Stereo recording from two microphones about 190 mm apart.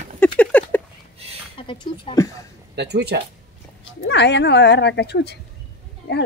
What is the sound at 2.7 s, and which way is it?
Speech, 60° right (ahead or behind).